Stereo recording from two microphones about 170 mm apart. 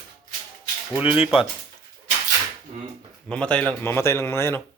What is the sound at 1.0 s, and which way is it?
Speech, 30° left (ahead or behind).